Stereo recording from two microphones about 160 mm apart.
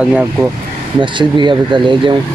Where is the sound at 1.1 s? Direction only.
30° right (ahead or behind).